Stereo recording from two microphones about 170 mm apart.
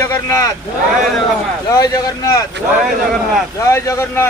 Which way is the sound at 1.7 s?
20° left (ahead or behind).